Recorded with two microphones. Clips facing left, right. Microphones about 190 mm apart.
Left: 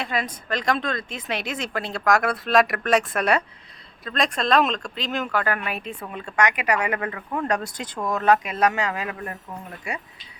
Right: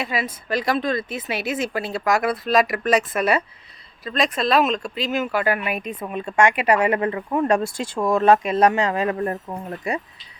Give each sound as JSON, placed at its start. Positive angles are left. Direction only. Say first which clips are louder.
{"t": 0.0, "sound": "speech", "louder": "right 2 dB", "side_deg": -5}